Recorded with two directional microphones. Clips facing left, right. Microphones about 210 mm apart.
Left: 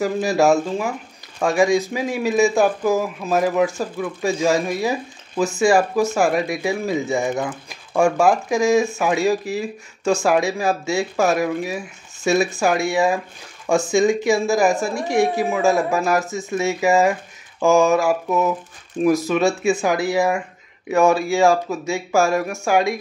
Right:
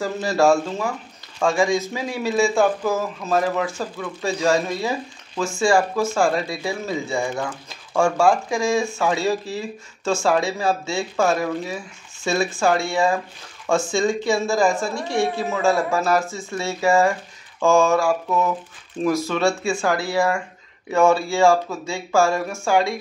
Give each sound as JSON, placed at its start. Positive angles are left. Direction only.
{"t": 0.0, "sound": "speech", "side_deg": 15}